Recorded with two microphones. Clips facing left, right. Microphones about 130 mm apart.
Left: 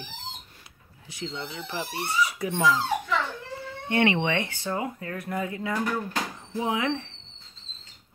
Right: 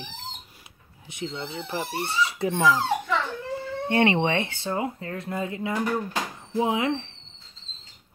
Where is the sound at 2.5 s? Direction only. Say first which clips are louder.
Right 2 dB; 15° right (ahead or behind).